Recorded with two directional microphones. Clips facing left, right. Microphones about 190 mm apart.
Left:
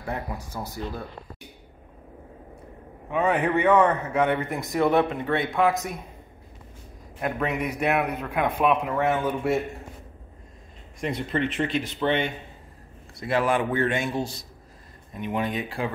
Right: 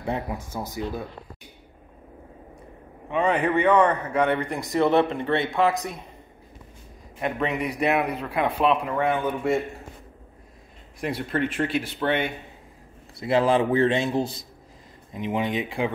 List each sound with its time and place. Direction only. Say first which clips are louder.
0.6 s speech: right 3 dB; 15° right (ahead or behind)
3.1 s a man's voice: right 1 dB; 5° left (ahead or behind)
7.2 s a man's voice: right 1 dB; centre (ahead or behind)
11.0 s a man's voice: even; 5° right (ahead or behind)
13.2 s speech: right 3 dB; 25° right (ahead or behind)